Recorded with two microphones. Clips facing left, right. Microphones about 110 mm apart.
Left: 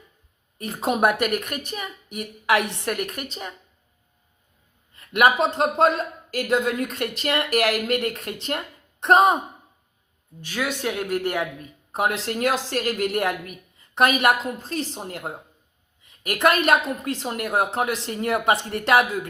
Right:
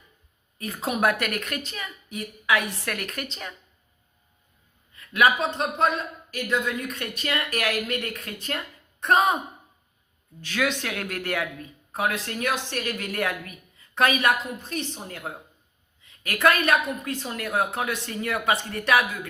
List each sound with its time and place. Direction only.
0.6 s a woman's voice: 25° left (ahead or behind)
4.9 s speech: 30° left (ahead or behind)
10.4 s a woman's voice: 10° left (ahead or behind); by 19.3 s 30° left (ahead or behind)